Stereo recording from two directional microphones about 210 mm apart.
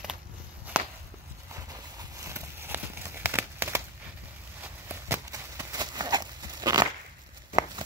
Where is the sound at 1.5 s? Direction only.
15° right (ahead or behind).